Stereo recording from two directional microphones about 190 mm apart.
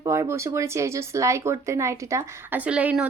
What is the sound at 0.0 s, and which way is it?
Speech, 15° right (ahead or behind).